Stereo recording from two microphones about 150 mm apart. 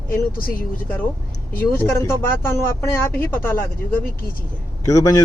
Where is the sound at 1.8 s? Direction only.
15° left (ahead or behind).